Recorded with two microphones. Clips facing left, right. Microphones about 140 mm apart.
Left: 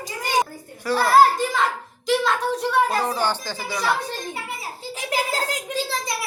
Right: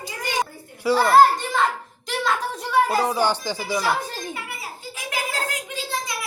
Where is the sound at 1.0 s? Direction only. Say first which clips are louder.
Even; 5° left (ahead or behind).